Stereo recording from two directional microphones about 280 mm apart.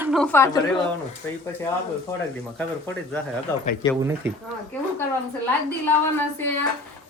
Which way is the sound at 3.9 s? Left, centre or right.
Centre.